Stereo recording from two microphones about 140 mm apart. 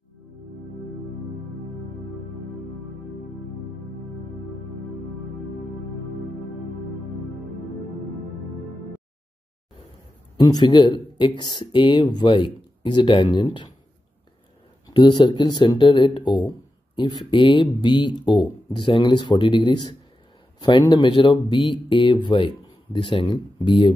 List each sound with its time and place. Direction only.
10.3 s speech: 30° left (ahead or behind)
14.9 s speech: 30° left (ahead or behind)